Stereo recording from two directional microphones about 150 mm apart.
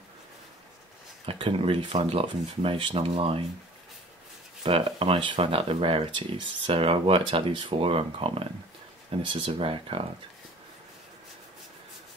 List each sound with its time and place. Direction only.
1.2 s speech: 35° right (ahead or behind)
4.6 s speech: 40° right (ahead or behind)